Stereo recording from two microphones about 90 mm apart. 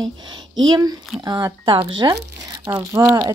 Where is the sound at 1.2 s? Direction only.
50° right (ahead or behind).